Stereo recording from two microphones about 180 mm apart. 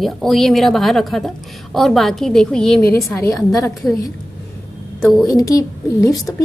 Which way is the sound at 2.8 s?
15° left (ahead or behind).